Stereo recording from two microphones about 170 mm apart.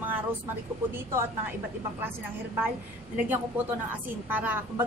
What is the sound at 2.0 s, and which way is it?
Speech, 10° right (ahead or behind).